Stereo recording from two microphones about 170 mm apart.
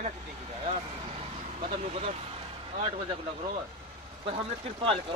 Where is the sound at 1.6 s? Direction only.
40° right (ahead or behind).